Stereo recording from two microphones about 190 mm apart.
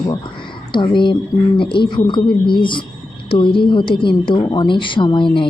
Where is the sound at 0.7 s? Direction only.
25° left (ahead or behind).